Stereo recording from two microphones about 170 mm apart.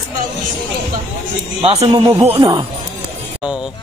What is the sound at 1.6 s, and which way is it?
A man's voice, 35° right (ahead or behind).